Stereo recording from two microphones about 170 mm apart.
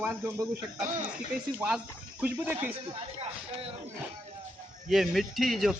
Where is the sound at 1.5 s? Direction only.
5° right (ahead or behind).